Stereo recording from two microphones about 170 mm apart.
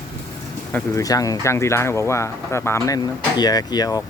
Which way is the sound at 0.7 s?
10° left (ahead or behind).